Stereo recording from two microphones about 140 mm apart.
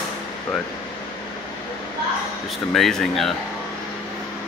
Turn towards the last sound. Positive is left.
turn(degrees=0)  # may be behind; listen again after turning